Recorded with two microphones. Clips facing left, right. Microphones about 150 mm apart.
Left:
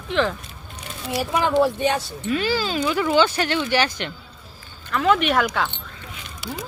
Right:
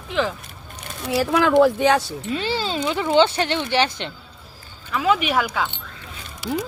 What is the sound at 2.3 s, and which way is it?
Speech, 25° right (ahead or behind).